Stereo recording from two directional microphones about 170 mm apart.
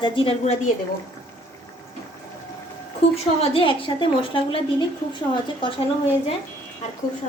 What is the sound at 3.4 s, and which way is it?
A woman's voice, 35° left (ahead or behind).